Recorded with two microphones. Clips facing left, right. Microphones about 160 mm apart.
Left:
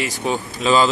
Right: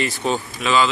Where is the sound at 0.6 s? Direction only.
35° left (ahead or behind).